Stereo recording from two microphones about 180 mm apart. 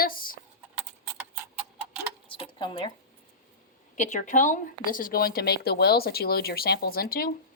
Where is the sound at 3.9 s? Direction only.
40° left (ahead or behind).